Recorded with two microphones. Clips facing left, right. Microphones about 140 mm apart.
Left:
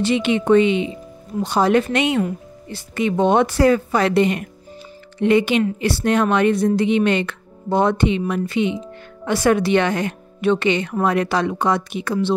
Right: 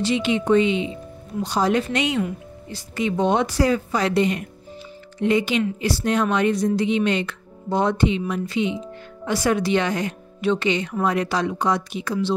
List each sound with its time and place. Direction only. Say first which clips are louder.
0.0 s speech: left 3 dB; 60° left (ahead or behind)